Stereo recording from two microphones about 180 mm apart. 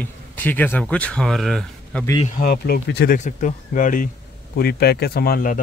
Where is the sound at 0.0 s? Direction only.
10° left (ahead or behind).